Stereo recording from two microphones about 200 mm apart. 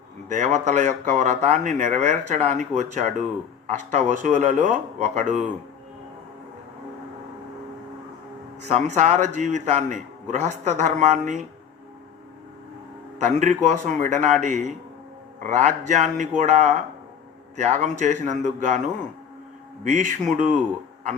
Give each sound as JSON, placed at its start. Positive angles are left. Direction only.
{"t": 0.3, "sound": "speech", "side_deg": -35}
{"t": 8.6, "sound": "speech", "side_deg": -35}
{"t": 13.1, "sound": "speech", "side_deg": -40}
{"t": 19.8, "sound": "speech", "side_deg": -40}